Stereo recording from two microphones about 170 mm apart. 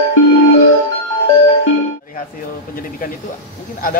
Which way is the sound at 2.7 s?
55° left (ahead or behind).